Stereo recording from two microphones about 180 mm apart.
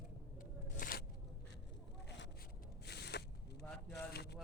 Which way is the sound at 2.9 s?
65° left (ahead or behind).